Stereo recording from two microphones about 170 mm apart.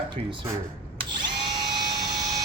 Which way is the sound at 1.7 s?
25° right (ahead or behind).